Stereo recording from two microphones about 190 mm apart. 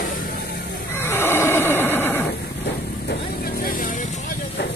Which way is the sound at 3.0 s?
50° left (ahead or behind).